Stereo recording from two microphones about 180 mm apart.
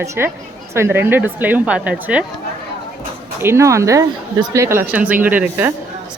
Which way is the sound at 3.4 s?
15° right (ahead or behind).